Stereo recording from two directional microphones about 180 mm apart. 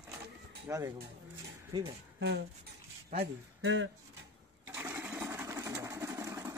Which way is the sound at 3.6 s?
90° right.